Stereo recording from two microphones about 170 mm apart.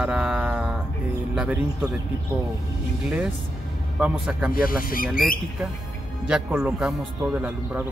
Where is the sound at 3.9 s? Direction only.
5° right (ahead or behind).